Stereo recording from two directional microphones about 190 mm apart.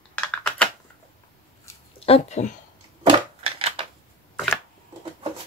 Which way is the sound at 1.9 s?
30° left (ahead or behind).